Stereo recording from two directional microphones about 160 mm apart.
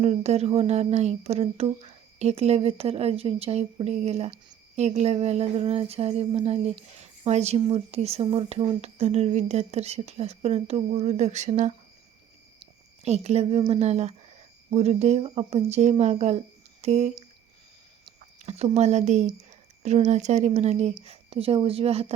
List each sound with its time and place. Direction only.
0.0 s speech: 45° right (ahead or behind)
13.0 s speech: 40° right (ahead or behind)
18.3 s speech: 40° right (ahead or behind)